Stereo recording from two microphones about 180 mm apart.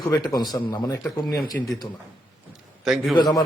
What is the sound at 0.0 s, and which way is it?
Speech, 20° left (ahead or behind).